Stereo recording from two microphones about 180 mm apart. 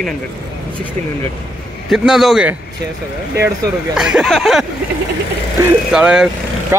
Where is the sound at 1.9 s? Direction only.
Centre (ahead or behind).